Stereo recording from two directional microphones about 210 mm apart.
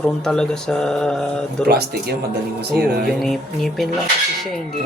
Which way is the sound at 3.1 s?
Centre (ahead or behind).